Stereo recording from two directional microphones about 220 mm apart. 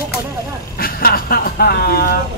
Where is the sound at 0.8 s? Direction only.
40° left (ahead or behind).